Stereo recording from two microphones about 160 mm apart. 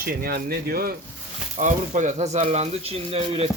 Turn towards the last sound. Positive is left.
turn(degrees=-35)  # may be behind; listen again after turning